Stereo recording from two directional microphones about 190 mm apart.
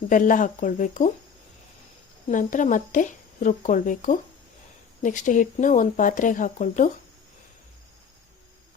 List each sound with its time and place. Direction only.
0.1 s speech: 45° left (ahead or behind)
2.3 s speech: 40° left (ahead or behind)